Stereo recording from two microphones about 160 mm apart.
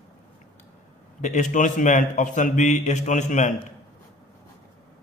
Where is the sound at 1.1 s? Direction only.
50° left (ahead or behind).